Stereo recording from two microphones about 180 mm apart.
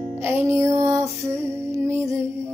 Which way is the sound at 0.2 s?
15° right (ahead or behind).